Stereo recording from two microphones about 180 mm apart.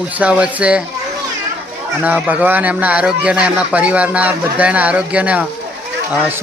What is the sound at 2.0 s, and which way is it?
Speech, 5° right (ahead or behind).